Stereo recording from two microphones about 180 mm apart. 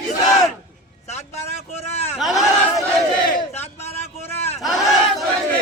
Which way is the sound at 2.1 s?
Centre (ahead or behind).